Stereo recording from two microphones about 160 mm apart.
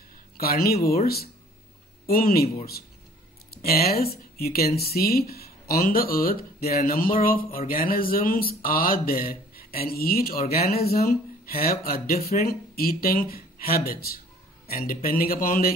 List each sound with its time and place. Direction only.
0.4 s speech: 70° left (ahead or behind)